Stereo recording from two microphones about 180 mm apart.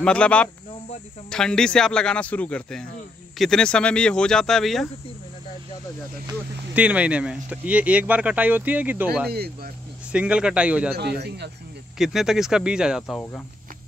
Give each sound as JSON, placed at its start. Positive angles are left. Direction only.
{"t": 0.0, "sound": "speech", "side_deg": 5}
{"t": 6.7, "sound": "speech", "side_deg": -5}
{"t": 9.3, "sound": "speech", "side_deg": -60}
{"t": 10.1, "sound": "speech", "side_deg": -5}
{"t": 11.0, "sound": "a man's voice", "side_deg": -65}
{"t": 12.0, "sound": "speech", "side_deg": 0}